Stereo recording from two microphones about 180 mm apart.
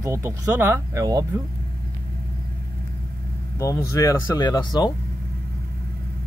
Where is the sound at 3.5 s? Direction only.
15° left (ahead or behind).